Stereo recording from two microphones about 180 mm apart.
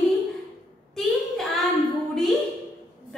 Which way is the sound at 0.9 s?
Centre (ahead or behind).